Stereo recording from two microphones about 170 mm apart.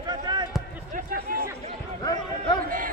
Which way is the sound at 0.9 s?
55° right (ahead or behind).